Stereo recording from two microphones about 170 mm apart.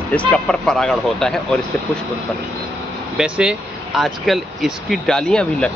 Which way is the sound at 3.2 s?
5° right (ahead or behind).